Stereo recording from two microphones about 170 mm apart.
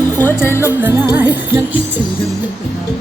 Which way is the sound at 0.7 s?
10° right (ahead or behind).